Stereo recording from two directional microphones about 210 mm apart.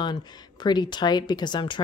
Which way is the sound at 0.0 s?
20° left (ahead or behind).